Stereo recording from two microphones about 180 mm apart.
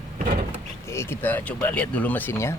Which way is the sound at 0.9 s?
15° left (ahead or behind).